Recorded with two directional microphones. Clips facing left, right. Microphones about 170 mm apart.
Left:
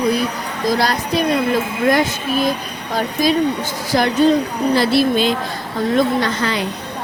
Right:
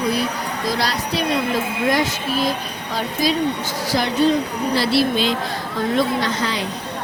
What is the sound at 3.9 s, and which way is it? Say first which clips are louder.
Speech: left 4 dB; 55° left (ahead or behind).